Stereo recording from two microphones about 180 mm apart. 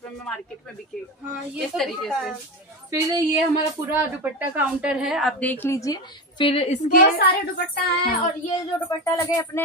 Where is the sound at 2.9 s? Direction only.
20° right (ahead or behind); by 6.5 s 20° left (ahead or behind).